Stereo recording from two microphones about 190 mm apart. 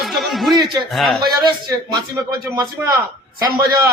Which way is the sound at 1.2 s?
25° right (ahead or behind).